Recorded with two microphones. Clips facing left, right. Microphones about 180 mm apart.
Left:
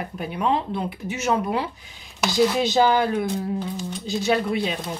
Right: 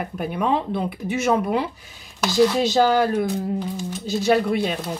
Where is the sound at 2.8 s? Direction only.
45° right (ahead or behind).